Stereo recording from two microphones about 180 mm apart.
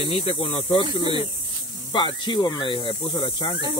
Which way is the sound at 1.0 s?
25° right (ahead or behind).